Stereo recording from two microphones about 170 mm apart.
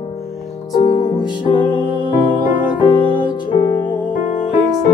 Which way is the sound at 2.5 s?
10° right (ahead or behind).